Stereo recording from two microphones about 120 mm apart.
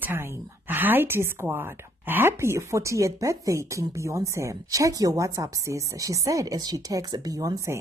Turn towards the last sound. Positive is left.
turn(degrees=-25)  # may be behind; listen again after turning